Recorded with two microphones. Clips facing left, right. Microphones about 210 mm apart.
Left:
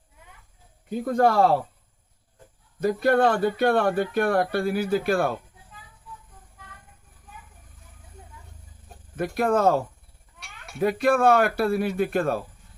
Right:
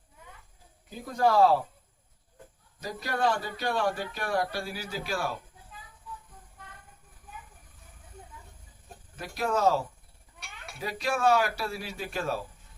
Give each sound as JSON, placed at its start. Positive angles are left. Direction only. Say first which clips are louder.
{"t": 0.9, "sound": "speech", "louder": "left 5 dB", "side_deg": 60}
{"t": 2.8, "sound": "speech", "louder": "left 9 dB", "side_deg": 55}
{"t": 9.1, "sound": "speech", "louder": "left 7 dB", "side_deg": 55}